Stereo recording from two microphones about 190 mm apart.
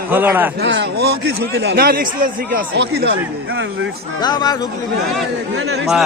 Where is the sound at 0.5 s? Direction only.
70° right (ahead or behind); by 2.6 s 50° right (ahead or behind).